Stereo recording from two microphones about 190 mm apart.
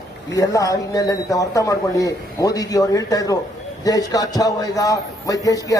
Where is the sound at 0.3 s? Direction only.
20° left (ahead or behind).